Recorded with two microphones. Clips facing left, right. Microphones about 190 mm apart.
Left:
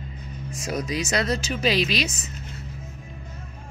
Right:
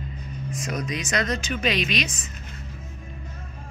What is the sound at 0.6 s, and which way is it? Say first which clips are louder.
Speech: left 4 dB; 30° left (ahead or behind).